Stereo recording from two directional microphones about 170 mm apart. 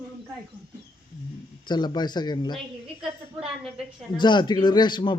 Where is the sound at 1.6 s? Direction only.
25° left (ahead or behind).